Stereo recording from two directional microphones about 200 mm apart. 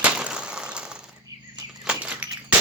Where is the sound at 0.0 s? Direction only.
5° right (ahead or behind).